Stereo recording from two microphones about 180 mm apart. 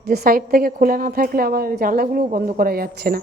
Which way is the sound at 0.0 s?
65° right (ahead or behind).